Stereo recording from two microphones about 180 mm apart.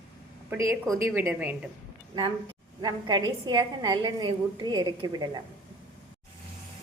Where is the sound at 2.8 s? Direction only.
25° right (ahead or behind).